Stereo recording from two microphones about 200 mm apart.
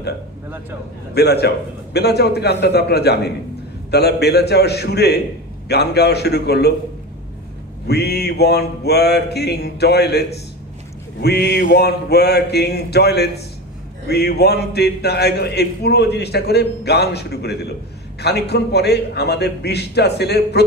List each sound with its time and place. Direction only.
1.1 s a man's voice: 55° left (ahead or behind)
7.8 s a man's voice: 55° left (ahead or behind)
11.1 s a sound: 55° left (ahead or behind)
14.0 s a man's voice: 55° left (ahead or behind)